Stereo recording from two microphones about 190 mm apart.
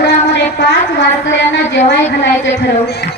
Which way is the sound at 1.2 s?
70° left (ahead or behind).